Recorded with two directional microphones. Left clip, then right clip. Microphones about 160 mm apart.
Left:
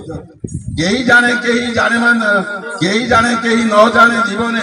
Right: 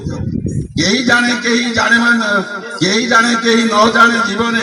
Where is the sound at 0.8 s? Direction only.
20° left (ahead or behind).